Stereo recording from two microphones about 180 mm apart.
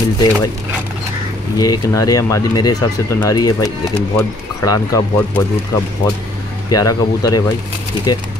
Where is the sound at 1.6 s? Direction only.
20° left (ahead or behind).